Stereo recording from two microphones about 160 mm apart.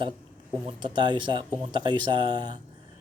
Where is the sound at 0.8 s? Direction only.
30° right (ahead or behind).